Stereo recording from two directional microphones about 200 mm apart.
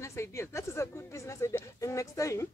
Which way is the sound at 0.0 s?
15° left (ahead or behind).